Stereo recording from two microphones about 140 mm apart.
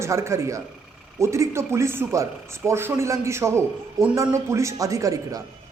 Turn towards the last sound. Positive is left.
turn(degrees=-25)  # may be behind; listen again after turning